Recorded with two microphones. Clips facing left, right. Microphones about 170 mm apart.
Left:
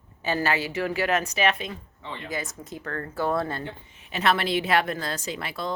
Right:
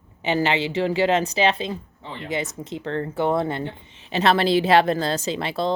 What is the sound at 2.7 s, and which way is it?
A woman's voice, 25° right (ahead or behind).